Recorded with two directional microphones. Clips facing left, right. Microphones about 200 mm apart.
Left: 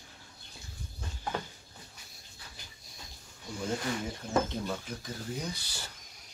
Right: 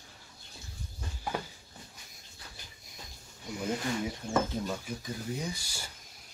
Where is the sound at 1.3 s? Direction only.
10° right (ahead or behind).